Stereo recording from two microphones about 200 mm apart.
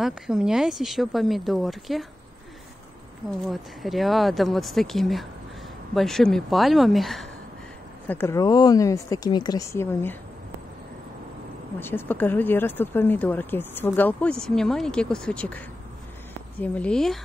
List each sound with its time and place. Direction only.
0.0 s speech: 5° right (ahead or behind)
3.4 s speech: centre (ahead or behind)
8.1 s speech: 10° left (ahead or behind)
11.8 s speech: 10° left (ahead or behind)
16.6 s speech: 5° left (ahead or behind)